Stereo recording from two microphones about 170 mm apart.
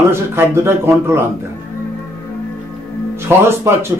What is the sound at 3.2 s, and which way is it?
Speech, 15° right (ahead or behind).